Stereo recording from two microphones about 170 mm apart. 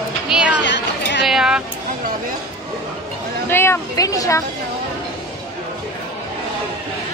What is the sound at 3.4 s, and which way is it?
Speech, 15° left (ahead or behind).